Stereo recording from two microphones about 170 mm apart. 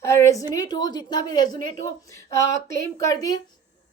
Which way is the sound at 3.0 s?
20° left (ahead or behind).